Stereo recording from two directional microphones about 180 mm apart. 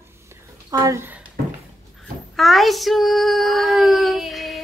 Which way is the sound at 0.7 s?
20° right (ahead or behind).